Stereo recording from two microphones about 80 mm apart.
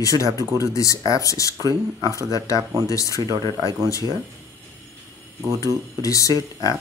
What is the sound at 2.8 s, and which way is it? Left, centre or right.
Speech, left.